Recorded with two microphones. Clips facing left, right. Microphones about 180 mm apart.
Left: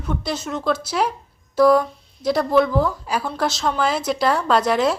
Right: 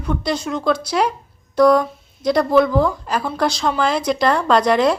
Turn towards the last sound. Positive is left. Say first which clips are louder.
# right 3 dB
turn(degrees=5)  # may be behind; listen again after turning